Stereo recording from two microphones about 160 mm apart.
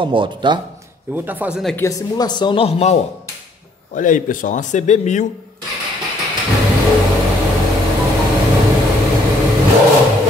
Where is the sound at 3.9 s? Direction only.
55° left (ahead or behind).